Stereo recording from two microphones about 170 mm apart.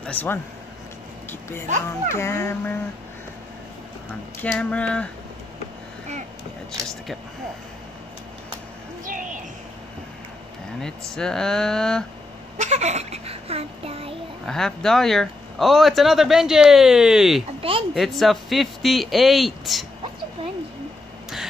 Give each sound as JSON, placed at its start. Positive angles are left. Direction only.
{"t": 0.0, "sound": "speech", "side_deg": 10}
{"t": 2.0, "sound": "a sound", "side_deg": 15}
{"t": 4.4, "sound": "a sound", "side_deg": 5}
{"t": 9.0, "sound": "a sound", "side_deg": -50}
{"t": 10.8, "sound": "speech", "side_deg": 5}
{"t": 12.5, "sound": "a child's voice", "side_deg": -40}
{"t": 14.4, "sound": "speech", "side_deg": 5}
{"t": 17.6, "sound": "speech", "side_deg": -30}
{"t": 17.9, "sound": "speech", "side_deg": 0}